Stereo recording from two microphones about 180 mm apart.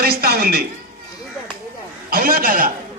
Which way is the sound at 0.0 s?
60° right (ahead or behind).